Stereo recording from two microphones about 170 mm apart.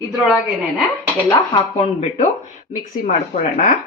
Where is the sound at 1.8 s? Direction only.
40° left (ahead or behind).